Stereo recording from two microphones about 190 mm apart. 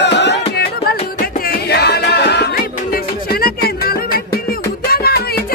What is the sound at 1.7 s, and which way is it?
Music, 60° left (ahead or behind).